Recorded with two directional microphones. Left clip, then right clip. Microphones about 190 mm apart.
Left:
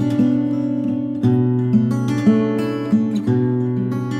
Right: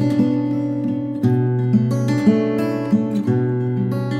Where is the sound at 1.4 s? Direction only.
40° left (ahead or behind).